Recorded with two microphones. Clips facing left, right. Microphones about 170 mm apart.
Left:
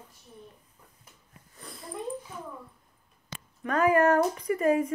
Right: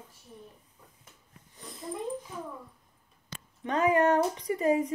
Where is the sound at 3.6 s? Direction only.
20° right (ahead or behind).